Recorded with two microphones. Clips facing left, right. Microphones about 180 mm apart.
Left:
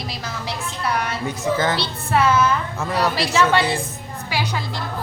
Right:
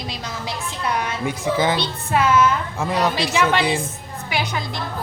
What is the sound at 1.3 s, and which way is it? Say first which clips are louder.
A man's voice: right 1 dB; 10° right (ahead or behind).